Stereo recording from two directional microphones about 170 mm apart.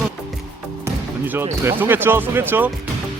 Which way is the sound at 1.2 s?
15° right (ahead or behind).